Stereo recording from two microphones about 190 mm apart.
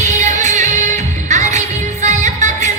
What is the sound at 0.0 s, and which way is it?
Music, 40° right (ahead or behind).